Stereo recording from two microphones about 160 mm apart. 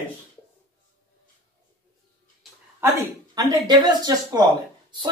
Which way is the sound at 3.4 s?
25° right (ahead or behind).